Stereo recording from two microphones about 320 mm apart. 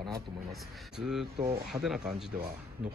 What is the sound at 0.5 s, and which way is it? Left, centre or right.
Speech, centre.